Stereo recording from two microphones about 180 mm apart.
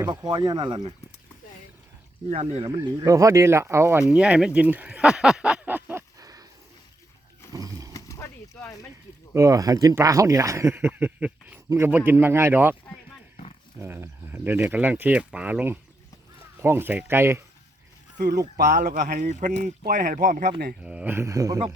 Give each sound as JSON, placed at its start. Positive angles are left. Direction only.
{"t": 0.0, "sound": "speech", "side_deg": -20}
{"t": 2.3, "sound": "speech", "side_deg": -35}
{"t": 7.5, "sound": "a sound", "side_deg": -20}
{"t": 7.9, "sound": "a sound", "side_deg": 15}
{"t": 9.3, "sound": "speech", "side_deg": -15}
{"t": 13.7, "sound": "speech", "side_deg": -15}
{"t": 18.2, "sound": "speech", "side_deg": -60}
{"t": 20.8, "sound": "speech", "side_deg": -5}